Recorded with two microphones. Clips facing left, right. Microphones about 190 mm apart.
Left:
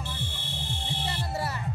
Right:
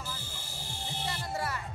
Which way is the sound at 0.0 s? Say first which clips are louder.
Left 5 dB; 25° left (ahead or behind).